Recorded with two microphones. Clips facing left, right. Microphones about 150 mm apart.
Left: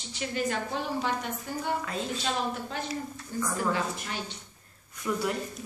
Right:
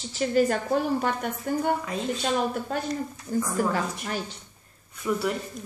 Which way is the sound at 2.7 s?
50° right (ahead or behind).